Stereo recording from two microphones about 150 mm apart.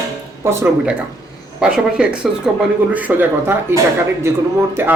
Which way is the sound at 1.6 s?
5° right (ahead or behind).